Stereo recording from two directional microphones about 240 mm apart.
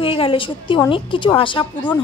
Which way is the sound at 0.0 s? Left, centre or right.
Left.